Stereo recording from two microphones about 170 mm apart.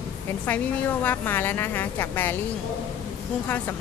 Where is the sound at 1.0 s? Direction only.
10° left (ahead or behind).